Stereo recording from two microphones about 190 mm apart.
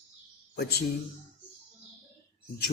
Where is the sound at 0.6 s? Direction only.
55° left (ahead or behind).